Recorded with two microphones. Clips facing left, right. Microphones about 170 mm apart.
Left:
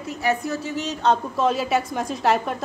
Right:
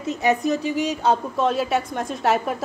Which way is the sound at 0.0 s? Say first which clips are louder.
Right 3 dB; 20° right (ahead or behind).